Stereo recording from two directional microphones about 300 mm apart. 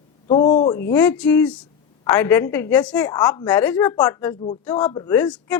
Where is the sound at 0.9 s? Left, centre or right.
Centre.